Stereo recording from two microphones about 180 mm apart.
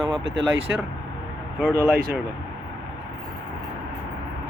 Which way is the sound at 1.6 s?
10° right (ahead or behind).